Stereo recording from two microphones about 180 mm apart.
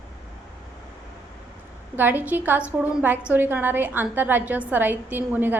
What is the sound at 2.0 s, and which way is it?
A woman's voice, 10° right (ahead or behind).